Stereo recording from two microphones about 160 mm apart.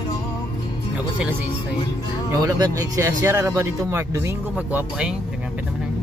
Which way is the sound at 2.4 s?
20° right (ahead or behind).